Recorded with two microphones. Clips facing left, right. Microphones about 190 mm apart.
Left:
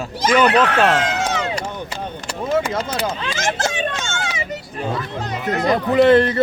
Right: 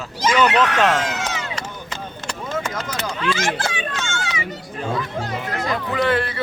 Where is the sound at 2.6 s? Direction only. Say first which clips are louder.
Left 5 dB; 25° left (ahead or behind).